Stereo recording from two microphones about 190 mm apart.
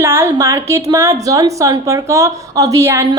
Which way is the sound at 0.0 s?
10° right (ahead or behind).